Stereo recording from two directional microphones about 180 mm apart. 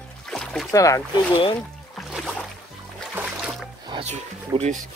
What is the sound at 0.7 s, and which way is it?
Speech, 20° left (ahead or behind).